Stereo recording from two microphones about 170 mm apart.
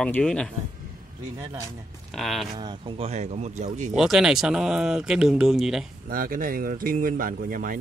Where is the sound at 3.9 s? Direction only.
Centre (ahead or behind).